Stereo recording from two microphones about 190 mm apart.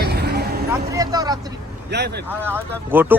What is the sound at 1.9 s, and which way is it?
Speech, 60° right (ahead or behind).